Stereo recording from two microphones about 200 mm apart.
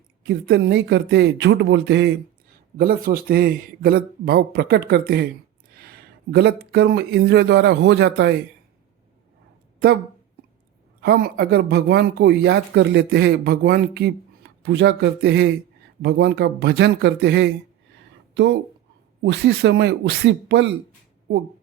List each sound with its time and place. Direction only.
0.2 s speech: 60° right (ahead or behind)
2.7 s speech: 45° right (ahead or behind)
11.0 s speech: 50° right (ahead or behind)
19.2 s speech: 60° right (ahead or behind)